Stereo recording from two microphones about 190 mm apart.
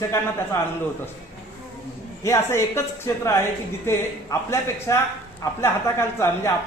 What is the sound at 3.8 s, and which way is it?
A man's voice, 15° left (ahead or behind).